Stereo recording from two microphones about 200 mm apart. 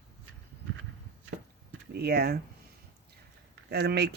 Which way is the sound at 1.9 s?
50° right (ahead or behind).